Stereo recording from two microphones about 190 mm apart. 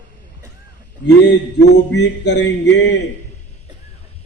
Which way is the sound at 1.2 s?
65° left (ahead or behind).